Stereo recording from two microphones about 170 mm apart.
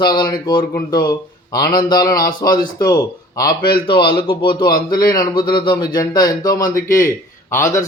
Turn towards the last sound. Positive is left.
turn(degrees=15)  # may be behind; listen again after turning